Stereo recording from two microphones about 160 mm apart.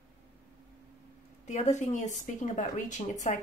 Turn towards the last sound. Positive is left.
turn(degrees=50)  # may be behind; listen again after turning